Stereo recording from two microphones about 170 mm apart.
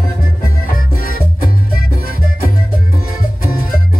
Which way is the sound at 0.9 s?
60° left (ahead or behind).